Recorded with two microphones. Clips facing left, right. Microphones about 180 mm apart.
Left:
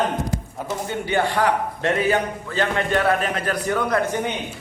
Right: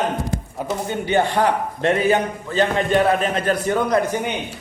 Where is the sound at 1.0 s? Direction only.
25° right (ahead or behind).